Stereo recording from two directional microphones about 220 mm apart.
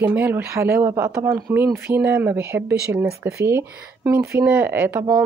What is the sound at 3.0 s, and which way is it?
Speech, 45° right (ahead or behind).